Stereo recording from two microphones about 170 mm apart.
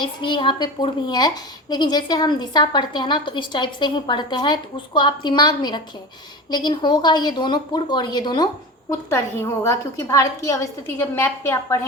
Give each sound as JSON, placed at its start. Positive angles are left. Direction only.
{"t": 0.0, "sound": "a woman's voice", "side_deg": 30}